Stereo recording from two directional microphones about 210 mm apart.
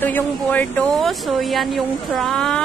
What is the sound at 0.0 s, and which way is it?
Speech, 10° left (ahead or behind).